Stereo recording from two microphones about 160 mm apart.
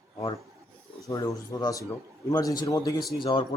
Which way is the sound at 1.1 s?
20° left (ahead or behind).